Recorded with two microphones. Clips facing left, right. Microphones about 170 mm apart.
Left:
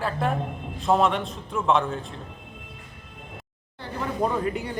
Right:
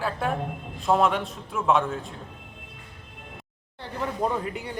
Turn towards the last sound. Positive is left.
turn(degrees=-20)  # may be behind; listen again after turning